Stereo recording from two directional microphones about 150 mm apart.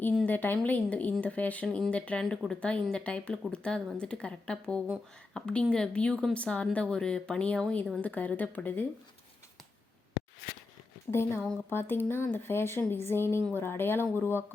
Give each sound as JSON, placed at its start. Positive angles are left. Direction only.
{"t": 0.2, "sound": "speech", "side_deg": 10}
{"t": 10.2, "sound": "a sound", "side_deg": 65}
{"t": 11.1, "sound": "speech", "side_deg": 15}